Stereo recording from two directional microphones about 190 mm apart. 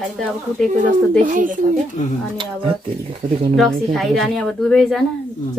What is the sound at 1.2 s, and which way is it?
Speech, 45° right (ahead or behind).